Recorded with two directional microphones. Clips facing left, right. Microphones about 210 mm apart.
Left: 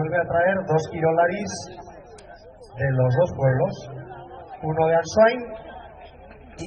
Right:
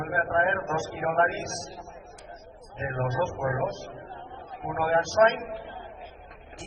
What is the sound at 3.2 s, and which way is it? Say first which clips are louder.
Speech: left 9 dB; 25° left (ahead or behind).